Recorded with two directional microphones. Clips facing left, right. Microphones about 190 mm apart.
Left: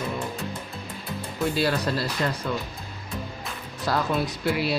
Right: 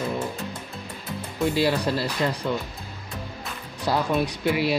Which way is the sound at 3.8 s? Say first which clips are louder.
Right 2 dB; 15° right (ahead or behind).